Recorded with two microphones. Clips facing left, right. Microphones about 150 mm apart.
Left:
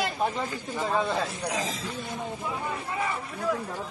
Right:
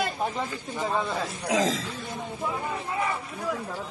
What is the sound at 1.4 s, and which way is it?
Speech, 90° right.